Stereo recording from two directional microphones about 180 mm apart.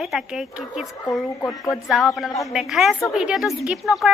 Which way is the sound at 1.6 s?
Centre (ahead or behind).